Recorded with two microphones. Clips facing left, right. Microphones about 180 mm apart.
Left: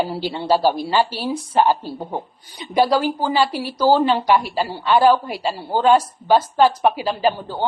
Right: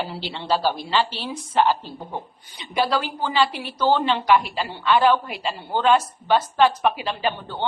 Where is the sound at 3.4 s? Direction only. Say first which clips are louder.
Left 4 dB; 40° left (ahead or behind).